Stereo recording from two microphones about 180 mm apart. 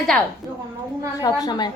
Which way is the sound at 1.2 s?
20° left (ahead or behind).